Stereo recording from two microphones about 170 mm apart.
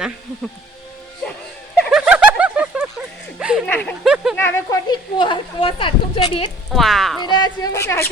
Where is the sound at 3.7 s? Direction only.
10° left (ahead or behind).